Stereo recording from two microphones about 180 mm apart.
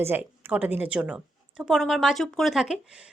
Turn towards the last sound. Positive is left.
turn(degrees=-5)  # may be behind; listen again after turning